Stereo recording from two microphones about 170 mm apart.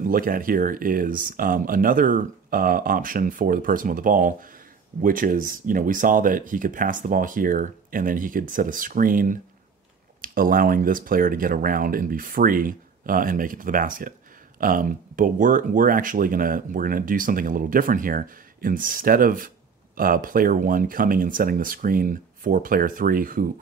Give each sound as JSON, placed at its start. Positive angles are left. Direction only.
{"t": 0.0, "sound": "speech", "side_deg": -55}